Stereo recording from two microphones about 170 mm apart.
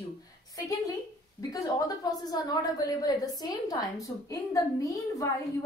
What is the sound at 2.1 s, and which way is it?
A woman's voice, 20° left (ahead or behind).